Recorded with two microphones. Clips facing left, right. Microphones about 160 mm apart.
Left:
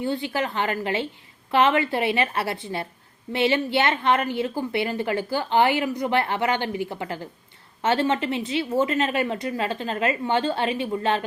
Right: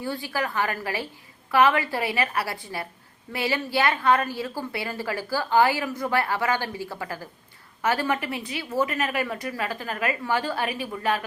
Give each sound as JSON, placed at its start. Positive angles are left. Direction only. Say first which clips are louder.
{"t": 0.0, "sound": "a woman's voice", "louder": "left 3 dB", "side_deg": 20}